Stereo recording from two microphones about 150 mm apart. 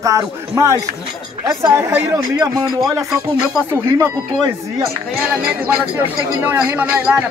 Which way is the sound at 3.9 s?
20° right (ahead or behind).